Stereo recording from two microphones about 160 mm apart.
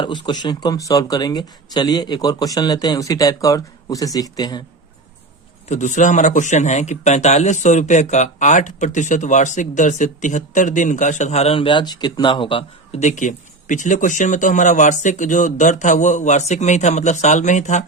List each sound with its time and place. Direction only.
0.0 s speech: 30° left (ahead or behind)
5.6 s a man's voice: 50° left (ahead or behind)